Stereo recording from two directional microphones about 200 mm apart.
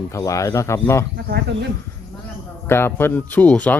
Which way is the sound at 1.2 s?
55° right (ahead or behind).